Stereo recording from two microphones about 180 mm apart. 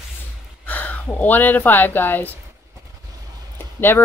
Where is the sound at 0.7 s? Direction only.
10° left (ahead or behind).